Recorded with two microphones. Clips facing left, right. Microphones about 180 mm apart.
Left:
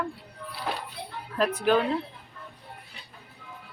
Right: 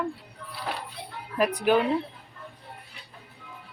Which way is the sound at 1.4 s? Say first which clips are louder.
Right 1 dB; 15° right (ahead or behind).